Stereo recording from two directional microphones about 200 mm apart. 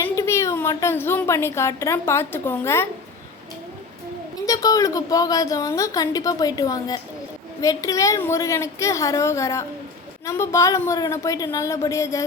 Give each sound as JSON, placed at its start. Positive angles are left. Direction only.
{"t": 0.0, "sound": "a woman's voice", "side_deg": 15}
{"t": 4.4, "sound": "a woman's voice", "side_deg": 20}